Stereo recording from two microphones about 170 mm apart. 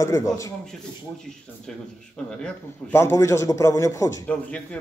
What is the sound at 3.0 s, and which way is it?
A man's voice, 15° left (ahead or behind).